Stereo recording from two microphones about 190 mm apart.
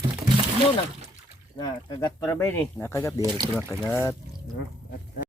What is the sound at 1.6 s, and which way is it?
Speech, 20° left (ahead or behind).